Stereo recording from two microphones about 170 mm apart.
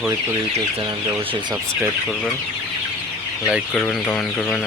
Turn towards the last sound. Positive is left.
turn(degrees=0)  # may be behind; listen again after turning